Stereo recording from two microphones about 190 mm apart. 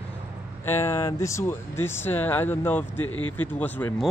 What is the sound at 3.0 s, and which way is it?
Speech, 90° left.